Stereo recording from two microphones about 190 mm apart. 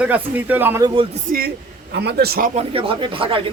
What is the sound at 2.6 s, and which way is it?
Speech, 30° right (ahead or behind).